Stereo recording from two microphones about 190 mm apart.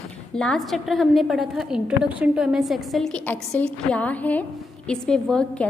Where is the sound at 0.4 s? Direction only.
Centre (ahead or behind).